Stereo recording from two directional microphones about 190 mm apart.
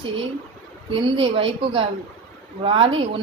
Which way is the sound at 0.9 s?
25° right (ahead or behind).